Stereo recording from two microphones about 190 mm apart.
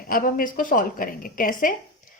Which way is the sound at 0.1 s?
50° left (ahead or behind).